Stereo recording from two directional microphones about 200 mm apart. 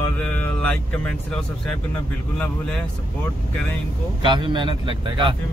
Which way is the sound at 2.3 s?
5° left (ahead or behind).